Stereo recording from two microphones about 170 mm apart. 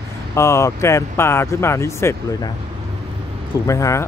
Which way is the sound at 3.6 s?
20° left (ahead or behind).